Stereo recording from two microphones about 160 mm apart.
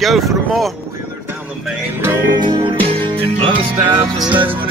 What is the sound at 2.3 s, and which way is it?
Music, 25° right (ahead or behind).